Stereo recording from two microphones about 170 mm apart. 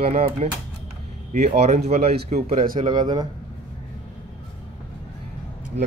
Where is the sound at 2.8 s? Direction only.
25° right (ahead or behind).